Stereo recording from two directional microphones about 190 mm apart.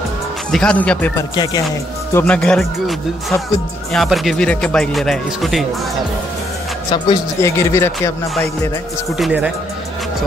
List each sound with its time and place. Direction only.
0.5 s speech: 5° left (ahead or behind)
1.3 s speech: 20° left (ahead or behind)
2.1 s speech: 5° left (ahead or behind)
6.9 s speech: 20° left (ahead or behind)
9.2 s speech: 5° right (ahead or behind)